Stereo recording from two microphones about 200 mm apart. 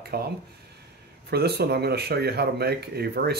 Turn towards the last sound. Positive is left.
turn(degrees=-55)  # may be behind; listen again after turning